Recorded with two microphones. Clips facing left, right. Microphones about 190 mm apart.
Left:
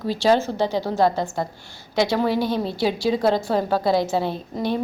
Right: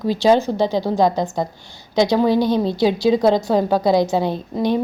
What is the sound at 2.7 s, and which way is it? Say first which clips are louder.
A woman's voice: right 5 dB; 20° right (ahead or behind).